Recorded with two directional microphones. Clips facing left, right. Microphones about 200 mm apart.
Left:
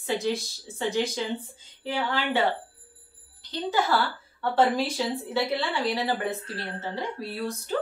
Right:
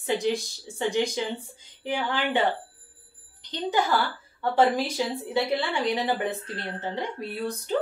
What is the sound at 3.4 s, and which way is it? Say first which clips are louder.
Music: even; 15° right (ahead or behind).